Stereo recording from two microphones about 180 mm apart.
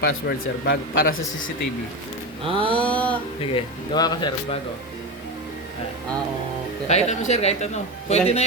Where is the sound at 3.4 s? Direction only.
25° left (ahead or behind).